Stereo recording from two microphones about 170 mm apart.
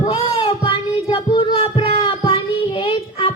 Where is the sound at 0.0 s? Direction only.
35° left (ahead or behind).